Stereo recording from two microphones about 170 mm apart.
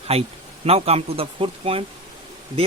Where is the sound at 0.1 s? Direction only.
35° right (ahead or behind).